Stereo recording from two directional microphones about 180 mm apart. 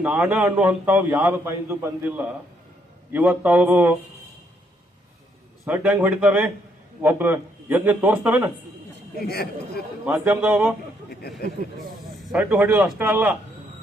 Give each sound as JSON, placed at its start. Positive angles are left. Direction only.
{"t": 0.0, "sound": "a man's voice", "side_deg": -5}
{"t": 5.6, "sound": "a man's voice", "side_deg": -10}
{"t": 9.1, "sound": "speech", "side_deg": 60}
{"t": 10.1, "sound": "a man's voice", "side_deg": -10}
{"t": 12.3, "sound": "a man's voice", "side_deg": -5}